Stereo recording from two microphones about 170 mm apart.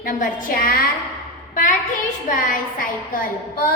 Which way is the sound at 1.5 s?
50° left (ahead or behind).